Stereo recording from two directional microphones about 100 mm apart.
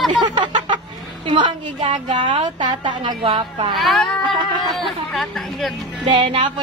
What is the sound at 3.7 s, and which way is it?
A woman's voice, centre (ahead or behind).